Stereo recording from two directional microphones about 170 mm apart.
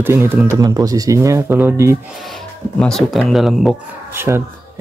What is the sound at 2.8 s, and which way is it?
Speech, centre (ahead or behind).